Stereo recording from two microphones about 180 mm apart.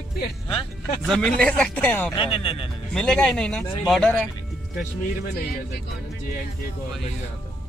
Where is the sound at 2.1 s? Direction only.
30° left (ahead or behind).